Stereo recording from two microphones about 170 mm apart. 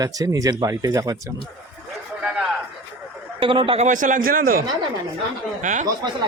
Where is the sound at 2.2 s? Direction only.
5° right (ahead or behind).